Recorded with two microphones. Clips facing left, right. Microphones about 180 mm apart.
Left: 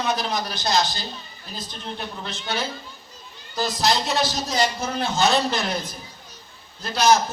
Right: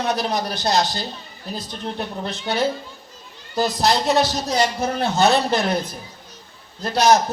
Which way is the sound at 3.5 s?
60° right (ahead or behind).